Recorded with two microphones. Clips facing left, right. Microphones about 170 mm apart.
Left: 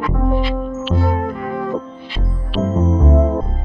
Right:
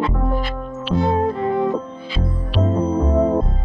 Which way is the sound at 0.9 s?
25° right (ahead or behind).